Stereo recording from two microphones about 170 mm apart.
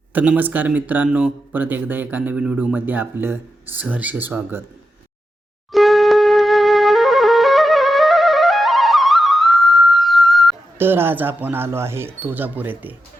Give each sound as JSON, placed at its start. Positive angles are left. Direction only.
{"t": 0.1, "sound": "speech", "side_deg": -10}
{"t": 5.7, "sound": "flute", "side_deg": 0}
{"t": 10.8, "sound": "speech", "side_deg": -15}